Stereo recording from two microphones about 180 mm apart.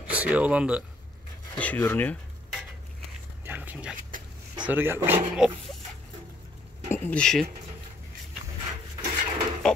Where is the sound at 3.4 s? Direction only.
10° right (ahead or behind).